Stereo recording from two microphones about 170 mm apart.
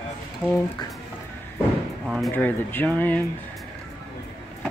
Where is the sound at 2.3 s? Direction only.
10° left (ahead or behind).